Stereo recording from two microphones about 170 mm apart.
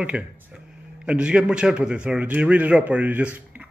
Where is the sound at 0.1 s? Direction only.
5° right (ahead or behind).